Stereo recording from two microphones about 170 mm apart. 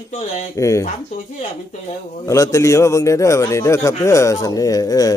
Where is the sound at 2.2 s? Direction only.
20° left (ahead or behind).